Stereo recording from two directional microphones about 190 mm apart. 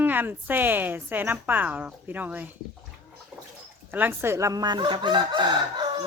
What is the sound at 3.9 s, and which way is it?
Speech, 10° right (ahead or behind).